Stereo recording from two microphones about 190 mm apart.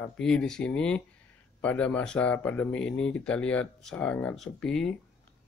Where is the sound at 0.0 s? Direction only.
5° left (ahead or behind).